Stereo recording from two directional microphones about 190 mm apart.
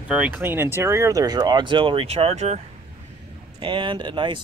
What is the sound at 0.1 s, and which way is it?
Speech, 10° right (ahead or behind).